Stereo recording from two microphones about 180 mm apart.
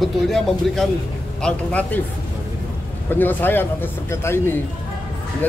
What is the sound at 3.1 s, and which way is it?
A man's voice, 10° left (ahead or behind).